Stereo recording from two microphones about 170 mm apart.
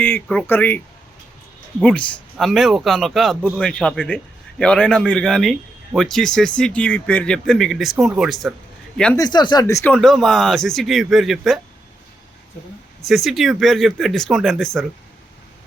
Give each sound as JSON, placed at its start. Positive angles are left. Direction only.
{"t": 0.0, "sound": "speech", "side_deg": 10}
{"t": 1.8, "sound": "a man's voice", "side_deg": 5}
{"t": 9.1, "sound": "speech", "side_deg": 25}
{"t": 9.9, "sound": "a man's voice", "side_deg": 5}
{"t": 13.1, "sound": "a man's voice", "side_deg": 0}